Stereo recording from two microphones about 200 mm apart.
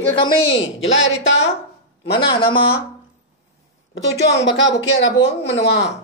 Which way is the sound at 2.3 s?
25° left (ahead or behind).